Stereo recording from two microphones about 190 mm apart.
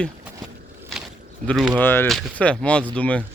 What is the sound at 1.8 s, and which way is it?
Speech, 10° left (ahead or behind).